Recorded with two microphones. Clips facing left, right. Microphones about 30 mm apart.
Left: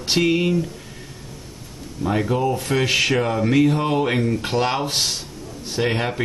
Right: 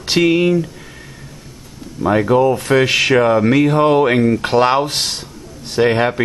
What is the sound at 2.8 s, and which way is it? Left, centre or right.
Speech, right.